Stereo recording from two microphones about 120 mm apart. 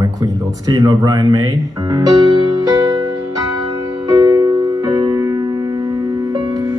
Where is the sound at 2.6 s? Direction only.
35° right (ahead or behind).